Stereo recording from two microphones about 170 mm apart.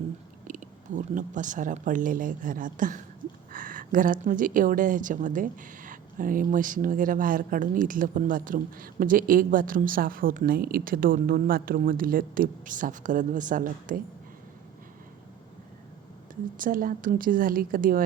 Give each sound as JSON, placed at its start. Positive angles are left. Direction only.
{"t": 0.4, "sound": "speech", "side_deg": -50}
{"t": 16.3, "sound": "a woman's voice", "side_deg": -55}